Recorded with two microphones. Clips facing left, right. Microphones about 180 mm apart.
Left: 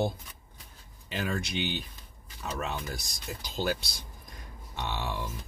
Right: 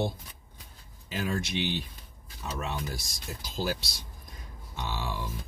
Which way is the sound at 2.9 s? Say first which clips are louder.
Even; centre (ahead or behind).